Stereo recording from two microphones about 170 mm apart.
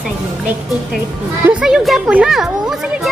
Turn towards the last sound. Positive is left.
turn(degrees=-5)  # may be behind; listen again after turning